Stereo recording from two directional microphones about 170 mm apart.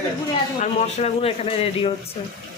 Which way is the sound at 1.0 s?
35° left (ahead or behind).